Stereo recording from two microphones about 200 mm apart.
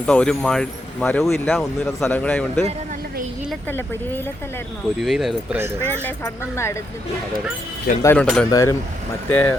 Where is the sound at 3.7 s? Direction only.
10° left (ahead or behind).